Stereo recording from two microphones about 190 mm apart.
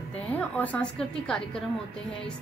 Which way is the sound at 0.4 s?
10° left (ahead or behind).